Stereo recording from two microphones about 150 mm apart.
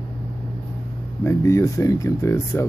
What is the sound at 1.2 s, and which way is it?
Speech, 20° left (ahead or behind).